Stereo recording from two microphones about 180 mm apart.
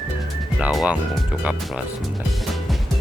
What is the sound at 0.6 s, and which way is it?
Speech, 5° right (ahead or behind).